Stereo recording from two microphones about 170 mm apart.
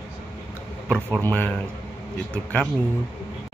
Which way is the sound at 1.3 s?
10° left (ahead or behind).